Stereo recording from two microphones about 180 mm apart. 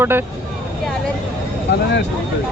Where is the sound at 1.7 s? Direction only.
70° left (ahead or behind).